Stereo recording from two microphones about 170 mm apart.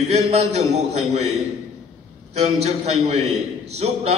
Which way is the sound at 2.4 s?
40° right (ahead or behind).